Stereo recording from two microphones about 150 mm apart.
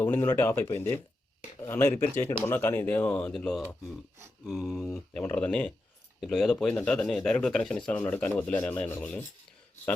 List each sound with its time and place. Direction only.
0.0 s speech: 15° left (ahead or behind)
6.1 s speech: centre (ahead or behind)